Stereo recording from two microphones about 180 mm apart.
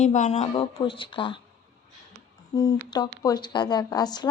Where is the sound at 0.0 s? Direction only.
40° left (ahead or behind).